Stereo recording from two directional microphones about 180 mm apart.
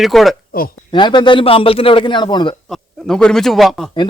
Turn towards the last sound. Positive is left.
turn(degrees=0)  # may be behind; listen again after turning